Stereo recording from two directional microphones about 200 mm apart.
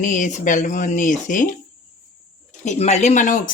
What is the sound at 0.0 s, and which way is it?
Speech, 40° left (ahead or behind).